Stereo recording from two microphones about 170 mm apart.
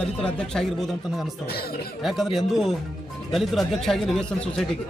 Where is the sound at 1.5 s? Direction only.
65° left (ahead or behind).